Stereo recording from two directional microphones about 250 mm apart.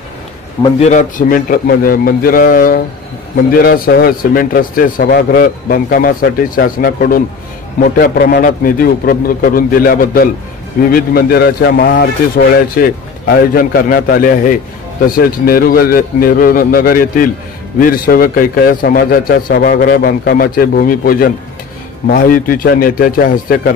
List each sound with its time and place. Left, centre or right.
0.6 s a man's voice: left